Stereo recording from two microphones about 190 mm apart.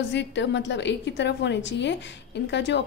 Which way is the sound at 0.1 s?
65° left (ahead or behind).